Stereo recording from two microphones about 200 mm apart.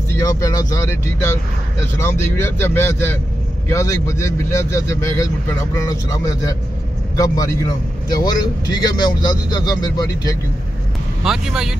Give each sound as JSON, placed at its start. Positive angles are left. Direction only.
{"t": 0.1, "sound": "a man's voice", "side_deg": 15}
{"t": 11.2, "sound": "speech", "side_deg": 0}